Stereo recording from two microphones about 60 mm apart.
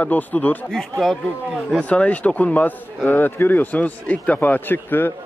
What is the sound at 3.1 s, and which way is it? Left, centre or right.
Speech, left.